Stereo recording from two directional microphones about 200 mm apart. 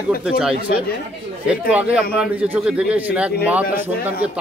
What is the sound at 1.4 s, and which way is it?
A man's voice, 5° right (ahead or behind).